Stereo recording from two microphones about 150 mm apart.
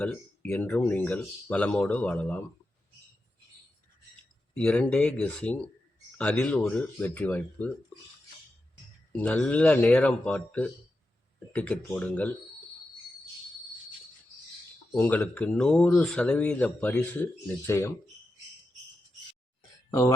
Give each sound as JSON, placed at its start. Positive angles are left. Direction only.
{"t": 0.0, "sound": "speech", "side_deg": 10}
{"t": 4.5, "sound": "speech", "side_deg": 10}
{"t": 9.1, "sound": "speech", "side_deg": 10}
{"t": 14.9, "sound": "speech", "side_deg": 10}